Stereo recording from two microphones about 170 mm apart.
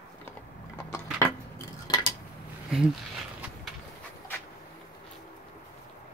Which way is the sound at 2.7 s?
Centre (ahead or behind).